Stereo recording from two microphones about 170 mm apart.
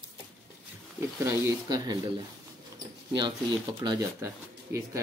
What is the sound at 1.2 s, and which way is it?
Speech, 15° right (ahead or behind).